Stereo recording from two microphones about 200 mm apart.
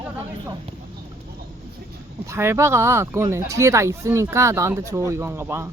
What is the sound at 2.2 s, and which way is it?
Speech, 15° right (ahead or behind).